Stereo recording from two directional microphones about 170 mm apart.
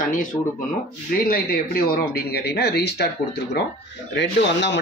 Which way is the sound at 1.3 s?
60° left (ahead or behind).